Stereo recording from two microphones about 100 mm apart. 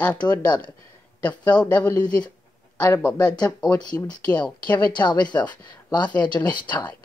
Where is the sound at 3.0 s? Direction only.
10° left (ahead or behind).